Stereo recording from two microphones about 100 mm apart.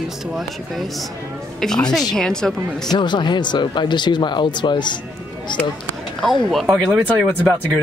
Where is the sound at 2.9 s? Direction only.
50° left (ahead or behind).